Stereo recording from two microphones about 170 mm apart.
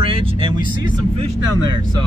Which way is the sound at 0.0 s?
35° right (ahead or behind).